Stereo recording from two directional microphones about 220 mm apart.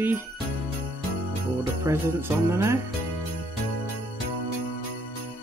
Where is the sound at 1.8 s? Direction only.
10° right (ahead or behind).